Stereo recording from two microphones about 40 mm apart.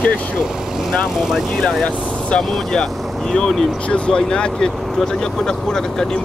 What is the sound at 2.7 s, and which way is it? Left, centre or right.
Speech, centre.